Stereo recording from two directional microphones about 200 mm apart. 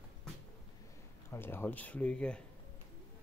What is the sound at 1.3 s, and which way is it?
Speech, 10° left (ahead or behind).